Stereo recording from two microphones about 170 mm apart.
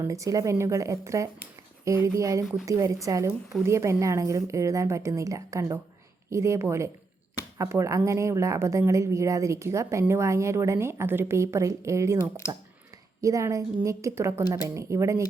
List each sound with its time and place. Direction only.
0.0 s a woman's voice: 20° right (ahead or behind)